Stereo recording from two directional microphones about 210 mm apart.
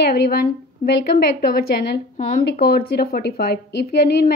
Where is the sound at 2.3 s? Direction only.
45° left (ahead or behind).